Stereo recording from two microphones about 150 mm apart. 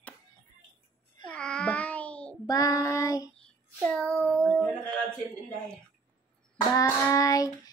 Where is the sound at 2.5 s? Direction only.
25° left (ahead or behind).